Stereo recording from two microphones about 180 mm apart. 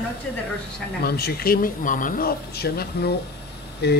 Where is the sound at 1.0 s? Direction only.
60° left (ahead or behind).